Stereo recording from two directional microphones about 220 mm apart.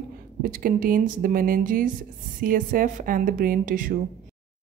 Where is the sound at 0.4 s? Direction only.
40° right (ahead or behind).